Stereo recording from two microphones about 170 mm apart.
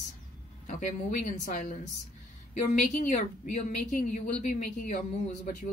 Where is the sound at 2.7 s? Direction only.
50° left (ahead or behind).